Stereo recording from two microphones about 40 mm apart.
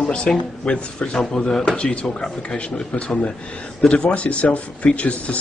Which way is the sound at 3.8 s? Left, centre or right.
Left.